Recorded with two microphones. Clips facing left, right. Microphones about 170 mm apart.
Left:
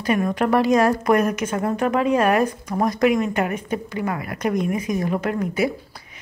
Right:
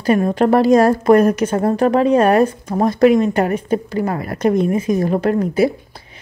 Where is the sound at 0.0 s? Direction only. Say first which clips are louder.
Right 6 dB; 30° right (ahead or behind).